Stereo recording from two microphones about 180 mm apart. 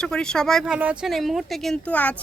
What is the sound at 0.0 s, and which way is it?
Speech, 5° left (ahead or behind).